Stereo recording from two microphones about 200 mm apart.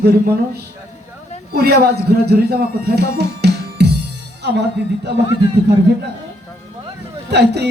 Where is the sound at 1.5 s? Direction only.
50° right (ahead or behind).